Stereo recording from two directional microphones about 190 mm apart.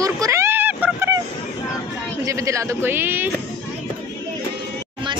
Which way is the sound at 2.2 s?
15° right (ahead or behind).